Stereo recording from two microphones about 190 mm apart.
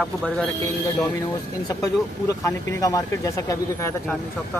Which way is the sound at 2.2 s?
15° left (ahead or behind).